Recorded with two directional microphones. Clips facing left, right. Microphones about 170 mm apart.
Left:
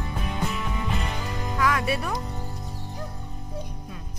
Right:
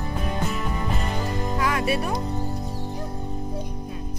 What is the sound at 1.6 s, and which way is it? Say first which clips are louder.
Music: even; 30° right (ahead or behind).